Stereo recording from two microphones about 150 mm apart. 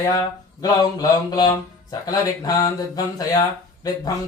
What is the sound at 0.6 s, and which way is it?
Speech, 25° left (ahead or behind).